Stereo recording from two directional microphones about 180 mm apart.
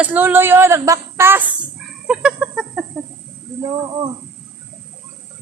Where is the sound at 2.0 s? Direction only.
5° right (ahead or behind).